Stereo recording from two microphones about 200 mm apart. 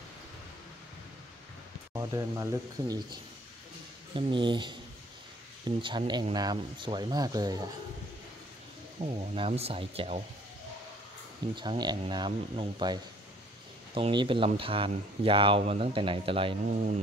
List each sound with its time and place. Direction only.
2.0 s speech: 15° right (ahead or behind)
5.8 s speech: 25° right (ahead or behind)
9.0 s speech: 30° right (ahead or behind)
11.5 s speech: 25° right (ahead or behind)